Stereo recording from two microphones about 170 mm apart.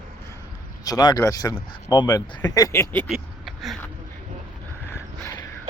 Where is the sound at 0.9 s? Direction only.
20° left (ahead or behind).